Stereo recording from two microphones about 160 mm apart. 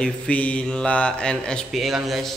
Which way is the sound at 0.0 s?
10° left (ahead or behind).